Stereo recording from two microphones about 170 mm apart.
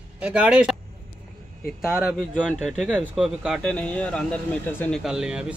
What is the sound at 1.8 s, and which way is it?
A man's voice, 5° right (ahead or behind).